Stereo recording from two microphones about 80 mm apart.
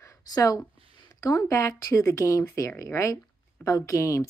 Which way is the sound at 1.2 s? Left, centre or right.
Left.